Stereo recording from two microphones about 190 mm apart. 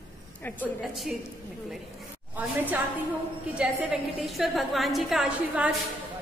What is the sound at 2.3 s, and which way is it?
A woman's voice, 10° right (ahead or behind).